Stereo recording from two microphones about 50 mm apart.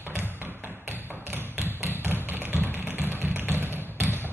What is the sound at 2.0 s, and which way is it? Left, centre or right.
Tap, right.